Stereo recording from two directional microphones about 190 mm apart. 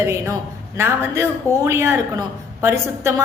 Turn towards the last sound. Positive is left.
turn(degrees=-15)  # may be behind; listen again after turning